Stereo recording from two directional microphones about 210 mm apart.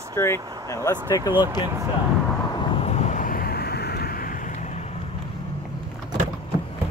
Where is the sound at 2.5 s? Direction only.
25° left (ahead or behind).